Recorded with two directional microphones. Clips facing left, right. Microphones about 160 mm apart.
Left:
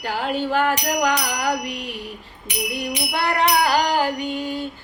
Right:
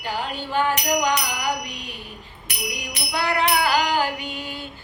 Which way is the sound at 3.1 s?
50° left (ahead or behind).